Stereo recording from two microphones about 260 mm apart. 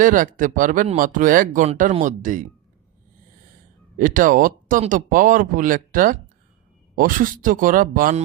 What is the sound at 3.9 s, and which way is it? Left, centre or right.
Speech, right.